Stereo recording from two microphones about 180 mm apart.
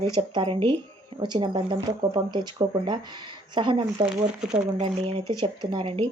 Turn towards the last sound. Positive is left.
turn(degrees=-30)  # may be behind; listen again after turning